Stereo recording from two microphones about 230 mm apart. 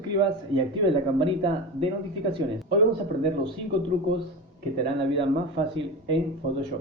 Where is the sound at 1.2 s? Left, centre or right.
Right.